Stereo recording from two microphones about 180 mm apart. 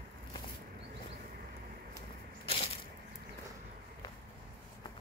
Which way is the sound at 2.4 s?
35° left (ahead or behind).